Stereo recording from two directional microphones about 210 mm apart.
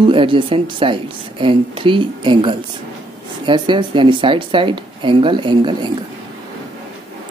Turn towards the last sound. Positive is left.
turn(degrees=-20)  # may be behind; listen again after turning